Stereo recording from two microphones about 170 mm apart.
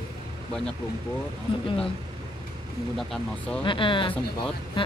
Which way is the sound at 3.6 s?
30° left (ahead or behind).